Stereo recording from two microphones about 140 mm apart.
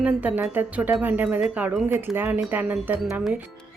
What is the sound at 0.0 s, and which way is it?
Speech, 15° right (ahead or behind).